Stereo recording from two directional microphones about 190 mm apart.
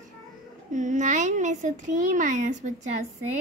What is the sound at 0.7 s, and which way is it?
A woman's voice, 40° right (ahead or behind).